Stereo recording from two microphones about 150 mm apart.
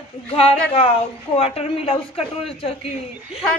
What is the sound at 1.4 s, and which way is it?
Speech, 45° left (ahead or behind).